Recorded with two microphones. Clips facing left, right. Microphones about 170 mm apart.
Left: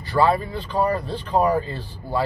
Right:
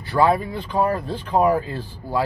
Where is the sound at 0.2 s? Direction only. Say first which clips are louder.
Right 1 dB; 10° right (ahead or behind).